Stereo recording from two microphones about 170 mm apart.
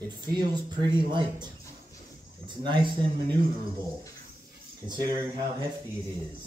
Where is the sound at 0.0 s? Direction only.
25° right (ahead or behind).